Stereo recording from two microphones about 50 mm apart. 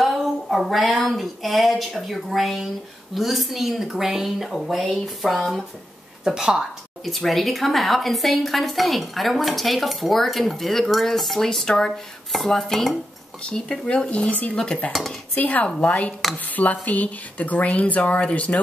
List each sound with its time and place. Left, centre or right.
0.0 s a sound: centre
1.0 s a woman's voice: centre
6.2 s speech: centre
7.1 s a woman's voice: centre
12.3 s dishes: centre
13.5 s speech: centre
14.9 s a woman's voice: centre
15.3 s speech: left